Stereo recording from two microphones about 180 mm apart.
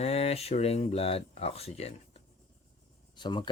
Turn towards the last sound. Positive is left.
turn(degrees=25)  # may be behind; listen again after turning